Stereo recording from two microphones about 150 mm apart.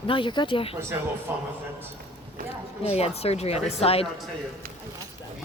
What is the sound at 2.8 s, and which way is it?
Speech, 45° left (ahead or behind).